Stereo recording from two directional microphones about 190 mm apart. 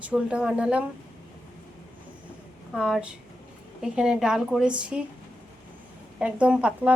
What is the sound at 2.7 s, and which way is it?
Speech, 5° right (ahead or behind).